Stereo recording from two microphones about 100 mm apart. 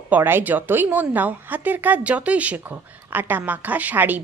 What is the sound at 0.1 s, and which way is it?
A woman's voice, 20° right (ahead or behind).